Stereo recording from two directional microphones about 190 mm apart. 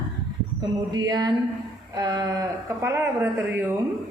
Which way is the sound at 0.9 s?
20° right (ahead or behind).